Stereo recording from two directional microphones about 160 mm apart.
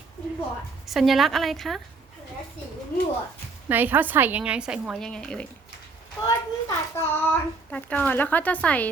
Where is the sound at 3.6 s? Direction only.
10° right (ahead or behind); by 5.4 s 5° left (ahead or behind).